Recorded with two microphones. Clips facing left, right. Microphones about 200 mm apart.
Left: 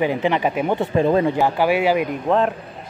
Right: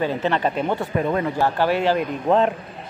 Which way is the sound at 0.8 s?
30° left (ahead or behind).